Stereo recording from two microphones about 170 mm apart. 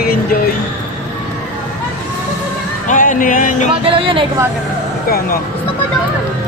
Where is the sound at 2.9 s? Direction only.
50° left (ahead or behind).